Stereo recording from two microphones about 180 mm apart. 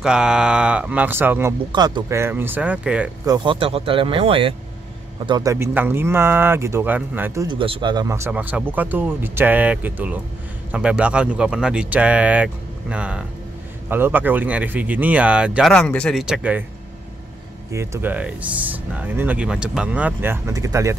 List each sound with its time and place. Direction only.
0.0 s speech: 5° right (ahead or behind)
1.7 s speech: 25° right (ahead or behind); by 3.1 s 5° right (ahead or behind)
3.3 s speech: 25° right (ahead or behind); by 7.4 s 10° right (ahead or behind)
7.4 s speech: 30° right (ahead or behind); by 15.7 s 5° right (ahead or behind)
15.7 s a man's voice: 5° left (ahead or behind)
17.6 s speech: 15° right (ahead or behind)